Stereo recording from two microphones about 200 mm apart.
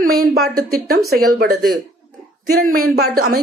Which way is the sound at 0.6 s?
50° right (ahead or behind).